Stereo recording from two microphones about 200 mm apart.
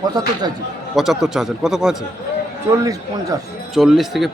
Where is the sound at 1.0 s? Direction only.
Centre (ahead or behind).